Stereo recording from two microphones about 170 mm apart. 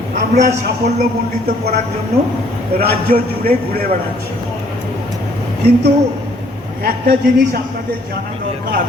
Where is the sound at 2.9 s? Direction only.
60° right (ahead or behind).